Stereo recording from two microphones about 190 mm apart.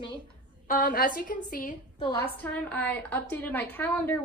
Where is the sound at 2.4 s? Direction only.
10° left (ahead or behind).